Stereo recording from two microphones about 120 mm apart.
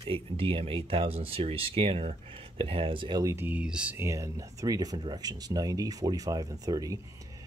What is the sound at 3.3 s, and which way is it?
Speech, 15° right (ahead or behind).